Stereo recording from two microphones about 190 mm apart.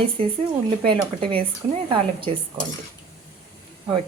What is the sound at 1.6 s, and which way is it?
Speech, 35° right (ahead or behind).